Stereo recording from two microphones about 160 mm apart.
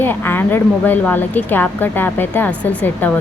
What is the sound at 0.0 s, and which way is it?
A woman's voice, 15° left (ahead or behind).